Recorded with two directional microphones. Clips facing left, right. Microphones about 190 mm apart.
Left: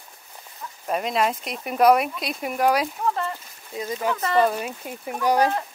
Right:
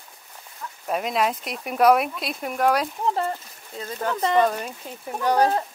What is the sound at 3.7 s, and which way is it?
Speech, 10° left (ahead or behind).